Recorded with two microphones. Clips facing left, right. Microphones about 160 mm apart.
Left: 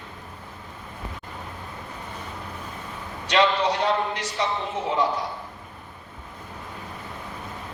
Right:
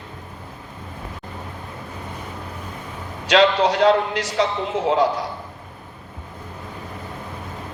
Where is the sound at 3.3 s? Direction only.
90° right.